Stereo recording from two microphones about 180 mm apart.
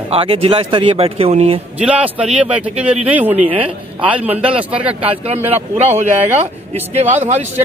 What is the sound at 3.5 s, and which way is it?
Speech, 30° right (ahead or behind).